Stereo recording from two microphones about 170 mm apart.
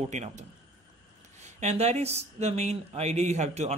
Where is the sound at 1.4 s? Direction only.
40° right (ahead or behind).